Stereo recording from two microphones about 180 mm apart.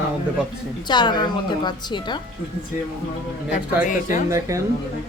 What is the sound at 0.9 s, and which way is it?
A woman's voice, 25° left (ahead or behind).